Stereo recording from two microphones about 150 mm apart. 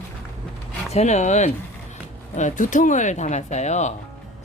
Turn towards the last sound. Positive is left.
turn(degrees=50)  # may be behind; listen again after turning